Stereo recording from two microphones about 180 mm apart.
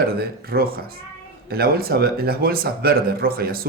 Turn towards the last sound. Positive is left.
turn(degrees=-55)  # may be behind; listen again after turning